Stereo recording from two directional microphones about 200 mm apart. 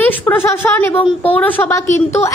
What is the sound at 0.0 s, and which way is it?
Speech, 10° left (ahead or behind).